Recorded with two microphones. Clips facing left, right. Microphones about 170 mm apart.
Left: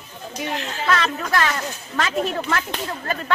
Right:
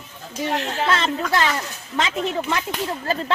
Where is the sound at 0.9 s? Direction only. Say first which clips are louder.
Left 1 dB; 25° right (ahead or behind).